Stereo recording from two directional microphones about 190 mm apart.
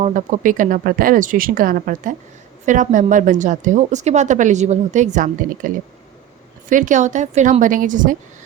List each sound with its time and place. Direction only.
0.0 s a woman's voice: 40° right (ahead or behind)